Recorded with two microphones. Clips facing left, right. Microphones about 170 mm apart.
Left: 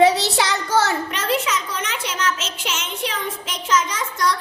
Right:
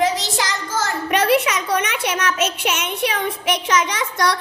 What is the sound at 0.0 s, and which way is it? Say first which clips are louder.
Speech: left 4 dB; 65° left (ahead or behind).